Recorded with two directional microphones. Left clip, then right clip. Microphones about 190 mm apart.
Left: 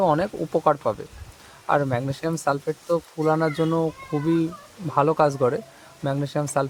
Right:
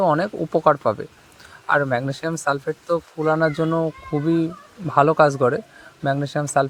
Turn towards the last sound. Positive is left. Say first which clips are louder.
# right 4 dB
turn(degrees=-15)  # may be behind; listen again after turning